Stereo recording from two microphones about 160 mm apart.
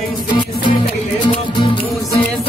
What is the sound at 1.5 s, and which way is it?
Music, 30° left (ahead or behind).